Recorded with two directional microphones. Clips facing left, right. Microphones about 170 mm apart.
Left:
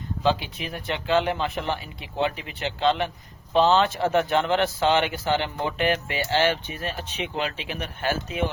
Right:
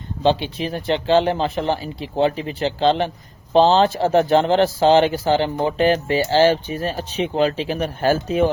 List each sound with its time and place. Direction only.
0.2 s speech: 30° right (ahead or behind)